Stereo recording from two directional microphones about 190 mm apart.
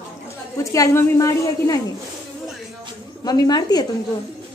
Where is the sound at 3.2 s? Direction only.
20° left (ahead or behind).